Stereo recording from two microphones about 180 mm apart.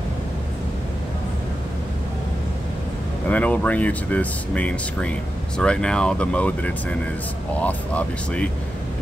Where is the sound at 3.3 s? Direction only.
10° left (ahead or behind).